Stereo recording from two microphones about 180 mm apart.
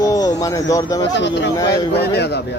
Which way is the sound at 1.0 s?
75° left (ahead or behind).